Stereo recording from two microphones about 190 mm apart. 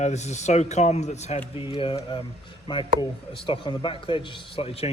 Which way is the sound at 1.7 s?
25° left (ahead or behind).